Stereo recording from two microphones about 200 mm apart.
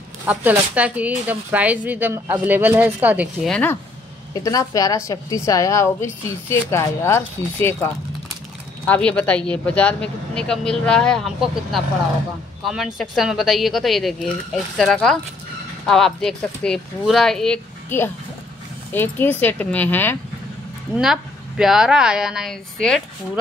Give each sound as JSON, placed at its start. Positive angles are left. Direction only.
{"t": 0.3, "sound": "speech", "side_deg": -5}
{"t": 3.4, "sound": "speech", "side_deg": 5}
{"t": 4.4, "sound": "a woman's voice", "side_deg": 15}
{"t": 21.0, "sound": "speech", "side_deg": 0}